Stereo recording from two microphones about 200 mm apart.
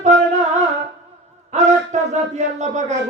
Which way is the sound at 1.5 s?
35° right (ahead or behind).